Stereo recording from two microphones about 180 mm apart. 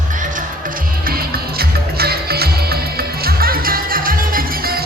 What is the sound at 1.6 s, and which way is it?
Music, 60° right (ahead or behind).